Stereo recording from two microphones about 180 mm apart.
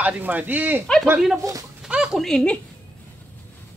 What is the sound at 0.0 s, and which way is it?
A man's voice, 10° right (ahead or behind).